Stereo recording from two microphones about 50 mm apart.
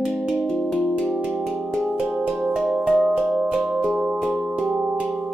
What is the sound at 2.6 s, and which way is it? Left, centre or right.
Music, centre.